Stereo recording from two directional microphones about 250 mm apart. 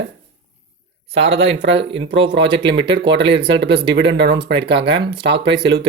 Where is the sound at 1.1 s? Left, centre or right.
Right.